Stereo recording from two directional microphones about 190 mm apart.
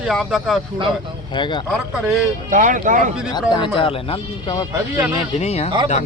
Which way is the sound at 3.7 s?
30° left (ahead or behind).